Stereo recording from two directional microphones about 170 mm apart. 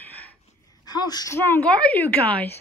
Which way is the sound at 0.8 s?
25° left (ahead or behind).